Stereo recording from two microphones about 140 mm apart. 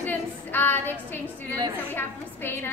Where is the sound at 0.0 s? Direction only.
15° left (ahead or behind).